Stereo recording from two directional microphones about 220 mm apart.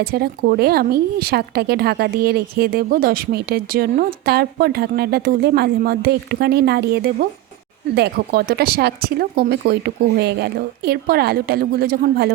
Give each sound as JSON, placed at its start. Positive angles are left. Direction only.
{"t": 0.0, "sound": "a woman's voice", "side_deg": -45}